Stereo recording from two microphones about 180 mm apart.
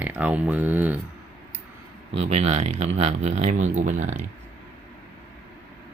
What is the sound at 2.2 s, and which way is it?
Speech, 35° right (ahead or behind).